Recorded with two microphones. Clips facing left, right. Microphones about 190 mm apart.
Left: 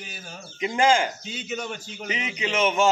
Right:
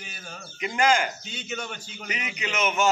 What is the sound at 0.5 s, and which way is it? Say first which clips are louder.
Speech: left 2 dB; 25° left (ahead or behind).